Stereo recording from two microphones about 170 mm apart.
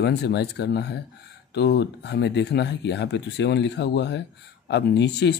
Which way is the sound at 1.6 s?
85° left.